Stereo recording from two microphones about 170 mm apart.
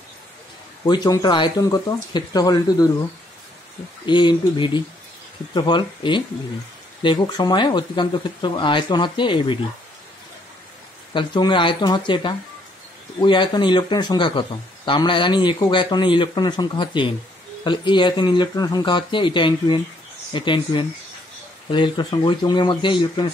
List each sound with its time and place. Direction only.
0.8 s speech: 25° left (ahead or behind)
4.0 s speech: 25° left (ahead or behind)
11.1 s speech: 25° left (ahead or behind)